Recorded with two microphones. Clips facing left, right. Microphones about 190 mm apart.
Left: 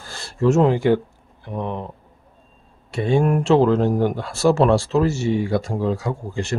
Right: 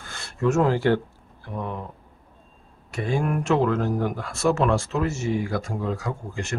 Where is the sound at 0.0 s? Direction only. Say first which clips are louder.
Left 5 dB; 35° left (ahead or behind).